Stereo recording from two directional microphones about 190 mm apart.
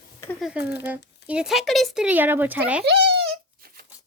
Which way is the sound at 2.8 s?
60° right (ahead or behind).